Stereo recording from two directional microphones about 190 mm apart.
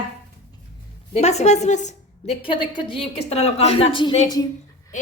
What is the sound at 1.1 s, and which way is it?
A woman's voice, 35° left (ahead or behind).